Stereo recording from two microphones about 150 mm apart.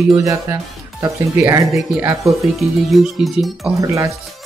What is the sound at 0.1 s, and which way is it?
Speech, 20° right (ahead or behind).